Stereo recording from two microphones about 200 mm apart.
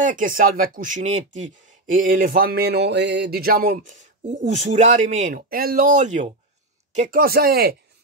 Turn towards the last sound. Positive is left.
turn(degrees=-50)  # may be behind; listen again after turning